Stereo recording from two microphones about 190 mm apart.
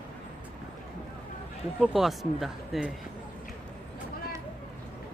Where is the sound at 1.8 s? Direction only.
Centre (ahead or behind).